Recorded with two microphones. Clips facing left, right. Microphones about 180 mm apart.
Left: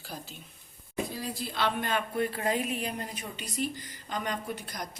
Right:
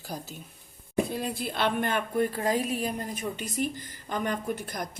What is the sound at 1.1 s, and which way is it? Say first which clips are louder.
Speech: right 4 dB; 60° right (ahead or behind).